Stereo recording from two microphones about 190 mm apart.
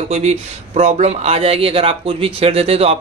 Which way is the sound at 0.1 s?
35° right (ahead or behind).